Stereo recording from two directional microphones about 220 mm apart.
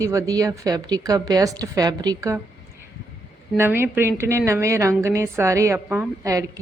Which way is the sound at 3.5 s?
10° right (ahead or behind).